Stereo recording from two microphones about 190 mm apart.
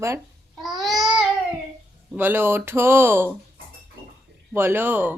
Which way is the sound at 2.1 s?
10° right (ahead or behind).